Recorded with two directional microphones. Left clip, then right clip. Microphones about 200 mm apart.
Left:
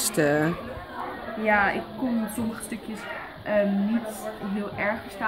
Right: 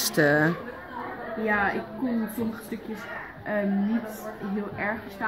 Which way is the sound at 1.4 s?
25° left (ahead or behind).